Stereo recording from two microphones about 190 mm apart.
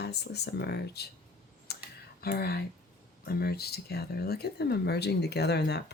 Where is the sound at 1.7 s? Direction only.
55° left (ahead or behind).